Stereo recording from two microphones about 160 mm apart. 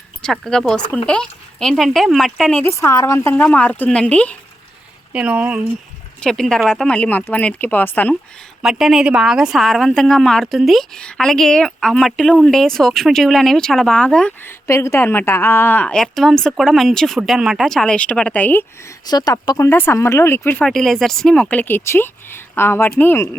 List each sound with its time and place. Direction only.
0.2 s a woman's voice: 5° left (ahead or behind)
2.6 s speech: 15° left (ahead or behind)
5.1 s speech: 10° right (ahead or behind)
6.1 s speech: 5° left (ahead or behind)
8.6 s a woman's voice: centre (ahead or behind)
14.7 s a woman's voice: 15° left (ahead or behind)
19.0 s speech: 25° left (ahead or behind)
20.7 s speech: centre (ahead or behind)